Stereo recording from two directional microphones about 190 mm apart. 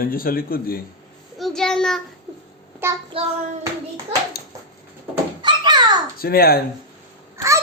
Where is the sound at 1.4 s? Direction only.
Centre (ahead or behind).